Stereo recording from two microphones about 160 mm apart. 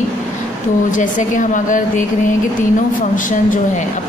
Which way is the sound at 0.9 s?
55° left (ahead or behind).